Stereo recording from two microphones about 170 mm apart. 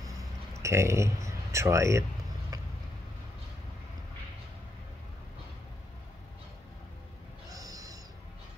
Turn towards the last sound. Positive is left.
turn(degrees=-20)  # may be behind; listen again after turning